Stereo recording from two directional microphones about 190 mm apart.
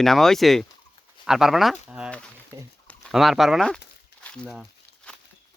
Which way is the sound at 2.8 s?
Centre (ahead or behind).